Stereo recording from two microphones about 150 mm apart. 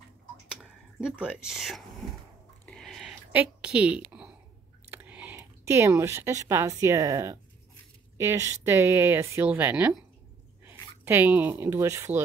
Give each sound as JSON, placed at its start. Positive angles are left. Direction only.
{"t": 0.6, "sound": "speech", "side_deg": -5}
{"t": 2.6, "sound": "a sound", "side_deg": 5}
{"t": 3.3, "sound": "a woman's voice", "side_deg": -10}
{"t": 11.1, "sound": "a woman's voice", "side_deg": -15}